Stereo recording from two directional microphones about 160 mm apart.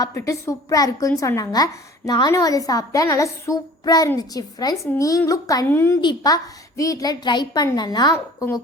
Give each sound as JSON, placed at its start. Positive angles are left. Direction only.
{"t": 0.0, "sound": "a woman's voice", "side_deg": 20}